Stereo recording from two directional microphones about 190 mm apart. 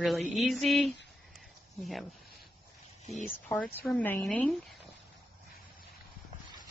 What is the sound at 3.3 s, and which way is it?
A woman's voice, 10° left (ahead or behind).